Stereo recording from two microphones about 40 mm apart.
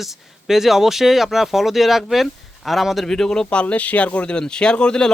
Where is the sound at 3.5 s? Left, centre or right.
Left.